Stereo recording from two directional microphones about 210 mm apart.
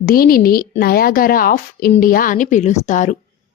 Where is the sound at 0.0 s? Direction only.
45° left (ahead or behind).